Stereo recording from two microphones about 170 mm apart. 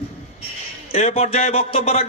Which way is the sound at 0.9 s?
40° left (ahead or behind).